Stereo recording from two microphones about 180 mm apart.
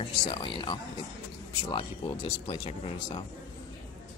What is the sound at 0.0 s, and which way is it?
Speech, 25° left (ahead or behind).